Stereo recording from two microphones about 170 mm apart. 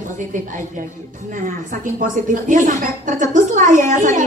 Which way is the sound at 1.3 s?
50° right (ahead or behind).